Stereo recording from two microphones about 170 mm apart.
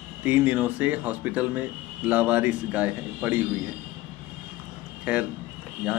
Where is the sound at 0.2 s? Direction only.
10° right (ahead or behind).